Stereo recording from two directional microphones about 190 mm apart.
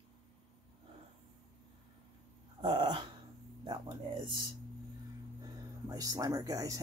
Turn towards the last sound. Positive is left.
turn(degrees=-20)  # may be behind; listen again after turning